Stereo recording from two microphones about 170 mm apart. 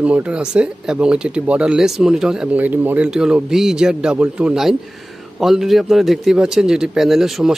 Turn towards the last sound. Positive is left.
turn(degrees=0)  # may be behind; listen again after turning